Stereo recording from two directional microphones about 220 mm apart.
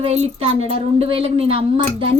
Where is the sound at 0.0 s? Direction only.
25° right (ahead or behind).